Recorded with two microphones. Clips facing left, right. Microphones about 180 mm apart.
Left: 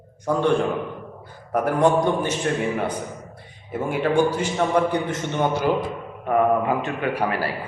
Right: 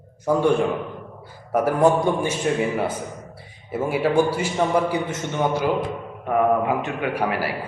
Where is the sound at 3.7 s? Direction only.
5° right (ahead or behind).